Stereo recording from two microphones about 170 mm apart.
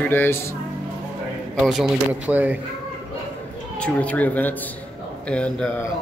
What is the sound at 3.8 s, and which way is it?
A man's voice, 10° left (ahead or behind).